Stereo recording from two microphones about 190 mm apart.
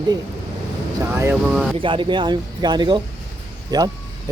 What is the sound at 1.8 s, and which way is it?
Speech, 25° right (ahead or behind).